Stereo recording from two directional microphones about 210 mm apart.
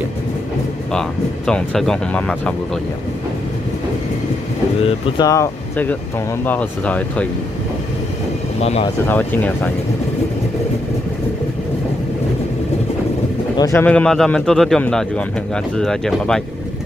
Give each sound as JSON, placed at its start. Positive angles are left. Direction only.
{"t": 0.9, "sound": "speech", "side_deg": 5}
{"t": 4.8, "sound": "speech", "side_deg": 20}
{"t": 8.5, "sound": "speech", "side_deg": 30}
{"t": 9.0, "sound": "speech", "side_deg": 10}
{"t": 13.6, "sound": "speech", "side_deg": 10}